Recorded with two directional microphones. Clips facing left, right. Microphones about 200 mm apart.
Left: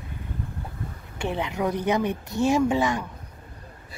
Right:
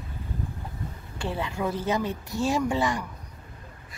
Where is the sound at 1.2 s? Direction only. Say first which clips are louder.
Left 3 dB; 20° left (ahead or behind).